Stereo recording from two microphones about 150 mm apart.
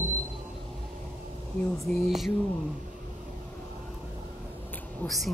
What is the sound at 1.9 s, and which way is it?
Speech, centre (ahead or behind).